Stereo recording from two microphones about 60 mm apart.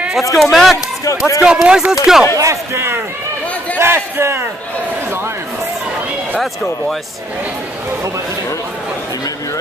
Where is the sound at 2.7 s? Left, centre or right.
Right.